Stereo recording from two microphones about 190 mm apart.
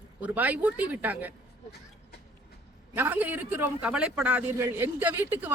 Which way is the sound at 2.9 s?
10° right (ahead or behind).